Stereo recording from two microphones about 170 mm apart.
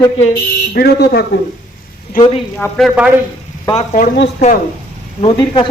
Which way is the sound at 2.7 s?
5° right (ahead or behind).